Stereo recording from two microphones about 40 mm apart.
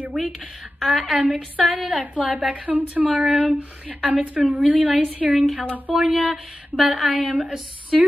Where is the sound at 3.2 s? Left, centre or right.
Centre.